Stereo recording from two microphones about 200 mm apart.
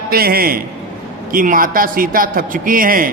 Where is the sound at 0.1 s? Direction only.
50° right (ahead or behind).